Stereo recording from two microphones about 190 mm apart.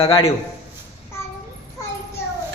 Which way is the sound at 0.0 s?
30° left (ahead or behind).